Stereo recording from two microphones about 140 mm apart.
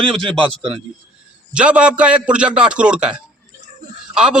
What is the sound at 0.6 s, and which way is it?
Speech, 40° right (ahead or behind).